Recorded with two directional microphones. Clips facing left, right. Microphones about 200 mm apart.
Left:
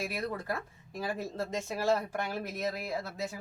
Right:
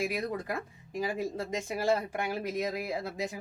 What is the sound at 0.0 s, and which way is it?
Speech, 15° right (ahead or behind).